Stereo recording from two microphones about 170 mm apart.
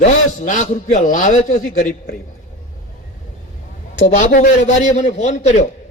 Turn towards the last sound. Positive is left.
turn(degrees=40)  # may be behind; listen again after turning